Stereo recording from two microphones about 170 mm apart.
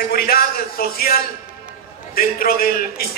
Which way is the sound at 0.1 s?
65° left (ahead or behind).